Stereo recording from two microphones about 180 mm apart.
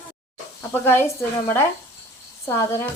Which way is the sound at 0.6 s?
15° left (ahead or behind).